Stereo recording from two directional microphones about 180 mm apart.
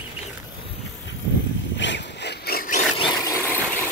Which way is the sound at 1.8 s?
80° left.